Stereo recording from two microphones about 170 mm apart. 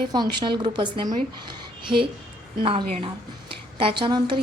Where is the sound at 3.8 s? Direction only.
30° right (ahead or behind).